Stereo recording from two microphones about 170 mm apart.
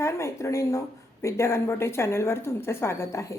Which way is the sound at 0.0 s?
15° left (ahead or behind).